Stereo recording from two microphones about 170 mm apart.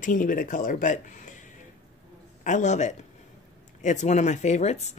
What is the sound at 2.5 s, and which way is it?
Speech, 45° left (ahead or behind).